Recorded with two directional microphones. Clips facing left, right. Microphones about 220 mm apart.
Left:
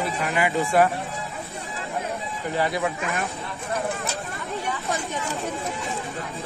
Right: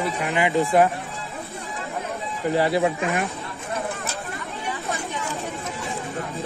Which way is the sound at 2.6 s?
30° right (ahead or behind).